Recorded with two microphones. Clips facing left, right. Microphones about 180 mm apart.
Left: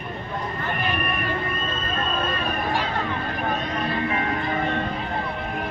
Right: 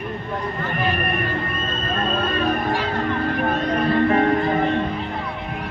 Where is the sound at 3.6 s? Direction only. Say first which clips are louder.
Right 7 dB; 45° right (ahead or behind).